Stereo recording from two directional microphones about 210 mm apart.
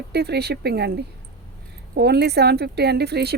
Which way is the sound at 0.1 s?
50° right (ahead or behind).